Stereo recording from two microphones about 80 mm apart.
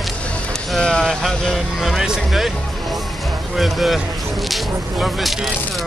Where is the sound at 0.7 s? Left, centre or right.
Centre.